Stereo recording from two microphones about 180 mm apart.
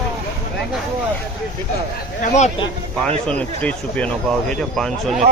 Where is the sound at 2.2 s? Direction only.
40° left (ahead or behind).